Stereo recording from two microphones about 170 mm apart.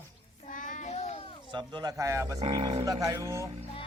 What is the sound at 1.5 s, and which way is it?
Speech, 25° right (ahead or behind).